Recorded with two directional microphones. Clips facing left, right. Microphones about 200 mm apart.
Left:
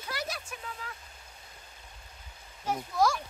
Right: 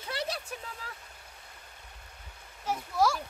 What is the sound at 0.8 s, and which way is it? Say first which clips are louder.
Vehicle: left 1 dB; 35° right (ahead or behind).